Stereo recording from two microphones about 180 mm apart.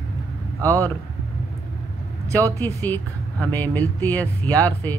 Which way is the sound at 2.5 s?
10° left (ahead or behind).